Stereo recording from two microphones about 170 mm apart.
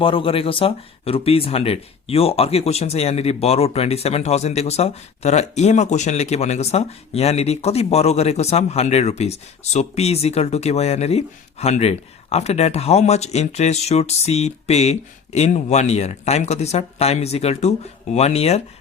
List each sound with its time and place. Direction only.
0.0 s speech: 30° left (ahead or behind)